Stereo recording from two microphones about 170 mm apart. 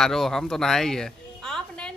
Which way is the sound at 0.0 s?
Centre (ahead or behind).